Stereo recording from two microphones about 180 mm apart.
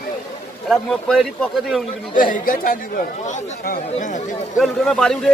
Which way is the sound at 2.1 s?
50° left (ahead or behind).